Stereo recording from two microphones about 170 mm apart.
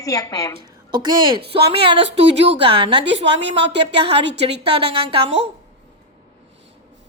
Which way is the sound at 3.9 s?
90° right.